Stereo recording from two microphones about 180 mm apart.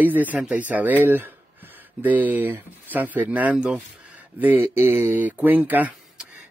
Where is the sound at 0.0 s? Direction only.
10° right (ahead or behind).